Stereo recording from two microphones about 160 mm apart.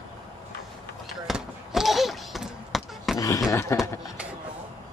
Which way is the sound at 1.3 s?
Centre (ahead or behind).